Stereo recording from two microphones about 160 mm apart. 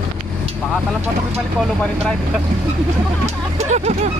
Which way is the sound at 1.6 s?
5° left (ahead or behind).